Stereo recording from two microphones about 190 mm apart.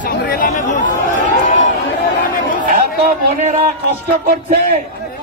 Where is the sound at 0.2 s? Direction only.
50° left (ahead or behind).